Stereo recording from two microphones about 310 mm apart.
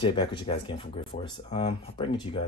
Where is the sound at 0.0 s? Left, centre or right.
Centre.